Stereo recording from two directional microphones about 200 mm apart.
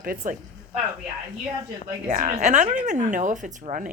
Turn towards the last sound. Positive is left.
turn(degrees=-40)  # may be behind; listen again after turning